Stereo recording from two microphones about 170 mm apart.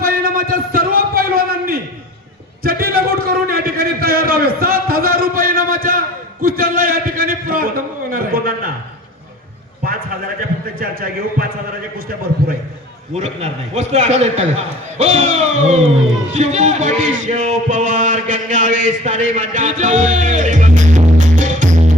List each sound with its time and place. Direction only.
0.0 s a sound: 60° right (ahead or behind)
10.8 s a man's voice: 60° right (ahead or behind)
13.1 s a man's voice: 40° right (ahead or behind)